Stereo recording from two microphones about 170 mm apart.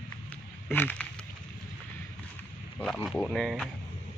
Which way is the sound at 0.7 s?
10° left (ahead or behind).